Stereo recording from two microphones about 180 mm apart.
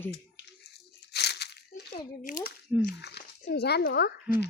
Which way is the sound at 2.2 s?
50° left (ahead or behind).